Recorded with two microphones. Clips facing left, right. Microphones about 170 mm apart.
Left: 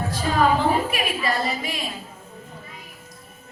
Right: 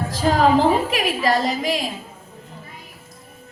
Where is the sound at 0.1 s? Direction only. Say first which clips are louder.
Right 4 dB; 90° right.